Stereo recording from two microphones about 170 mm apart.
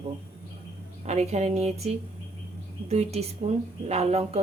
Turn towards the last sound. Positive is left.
turn(degrees=-40)  # may be behind; listen again after turning